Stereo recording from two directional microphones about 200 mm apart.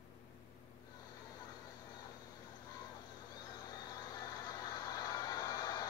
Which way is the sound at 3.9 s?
20° left (ahead or behind).